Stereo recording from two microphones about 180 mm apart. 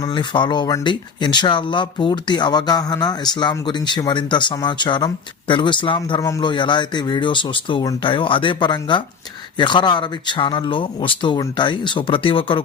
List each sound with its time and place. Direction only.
0.0 s speech: 25° left (ahead or behind)